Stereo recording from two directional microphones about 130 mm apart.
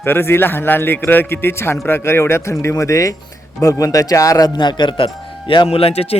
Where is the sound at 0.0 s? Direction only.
15° left (ahead or behind).